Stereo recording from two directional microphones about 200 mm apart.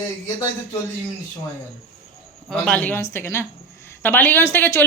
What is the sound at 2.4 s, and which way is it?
Speech, 5° left (ahead or behind).